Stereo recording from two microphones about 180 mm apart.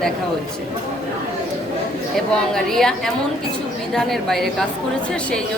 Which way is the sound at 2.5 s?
Centre (ahead or behind).